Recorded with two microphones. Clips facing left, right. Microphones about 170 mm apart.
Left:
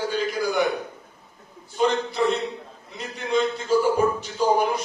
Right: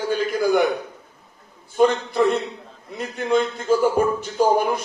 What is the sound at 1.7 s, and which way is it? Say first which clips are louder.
Speech: right 4 dB; 55° right (ahead or behind).